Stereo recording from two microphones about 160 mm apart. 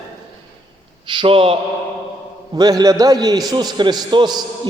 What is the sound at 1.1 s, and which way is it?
Speech, 35° right (ahead or behind).